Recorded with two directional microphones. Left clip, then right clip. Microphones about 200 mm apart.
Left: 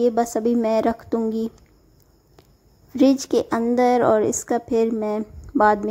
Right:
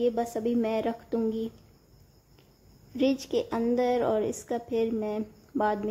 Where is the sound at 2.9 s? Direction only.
25° left (ahead or behind).